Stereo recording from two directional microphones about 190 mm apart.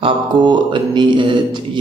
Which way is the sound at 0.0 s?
25° right (ahead or behind).